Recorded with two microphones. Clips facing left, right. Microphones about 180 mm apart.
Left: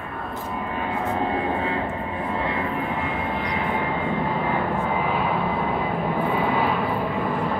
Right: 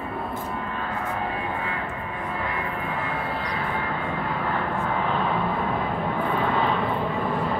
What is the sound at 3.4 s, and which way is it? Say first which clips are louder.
Vehicle: left 3 dB; 20° left (ahead or behind).